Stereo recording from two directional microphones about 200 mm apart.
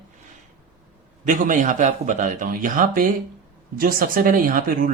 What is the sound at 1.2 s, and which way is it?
A man's voice, 40° right (ahead or behind).